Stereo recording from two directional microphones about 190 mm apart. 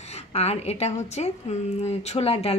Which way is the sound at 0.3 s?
35° left (ahead or behind).